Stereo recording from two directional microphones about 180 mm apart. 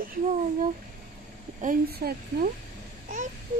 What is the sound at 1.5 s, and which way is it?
Speech, 50° right (ahead or behind).